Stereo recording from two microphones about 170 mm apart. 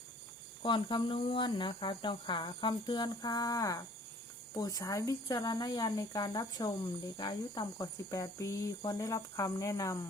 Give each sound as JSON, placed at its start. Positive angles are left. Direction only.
{"t": 0.6, "sound": "speech", "side_deg": 30}